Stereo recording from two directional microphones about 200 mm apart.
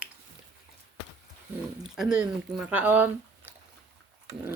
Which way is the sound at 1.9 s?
5° right (ahead or behind).